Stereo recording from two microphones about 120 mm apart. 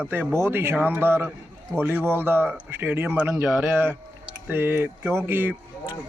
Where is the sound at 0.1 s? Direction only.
20° right (ahead or behind).